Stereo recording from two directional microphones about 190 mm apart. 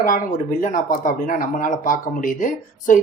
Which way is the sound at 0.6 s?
45° left (ahead or behind).